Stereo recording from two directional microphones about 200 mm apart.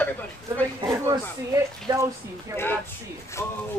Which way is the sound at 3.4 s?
15° left (ahead or behind).